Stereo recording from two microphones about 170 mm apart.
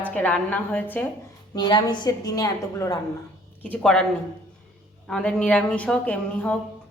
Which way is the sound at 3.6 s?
5° left (ahead or behind).